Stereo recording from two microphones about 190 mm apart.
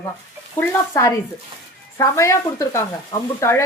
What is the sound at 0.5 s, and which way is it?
A woman's voice, 15° left (ahead or behind).